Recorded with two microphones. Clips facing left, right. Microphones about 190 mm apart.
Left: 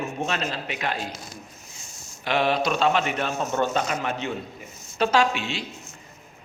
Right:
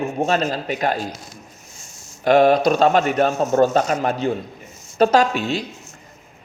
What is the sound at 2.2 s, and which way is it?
A man's voice, 45° right (ahead or behind).